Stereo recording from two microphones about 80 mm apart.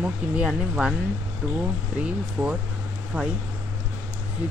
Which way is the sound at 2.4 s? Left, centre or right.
Right.